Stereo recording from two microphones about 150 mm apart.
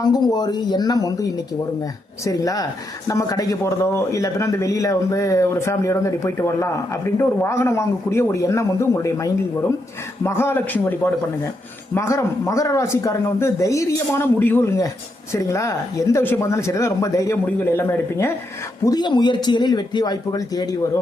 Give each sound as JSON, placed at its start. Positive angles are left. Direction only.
{"t": 0.0, "sound": "a man's voice", "side_deg": 25}
{"t": 18.9, "sound": "a man's voice", "side_deg": 30}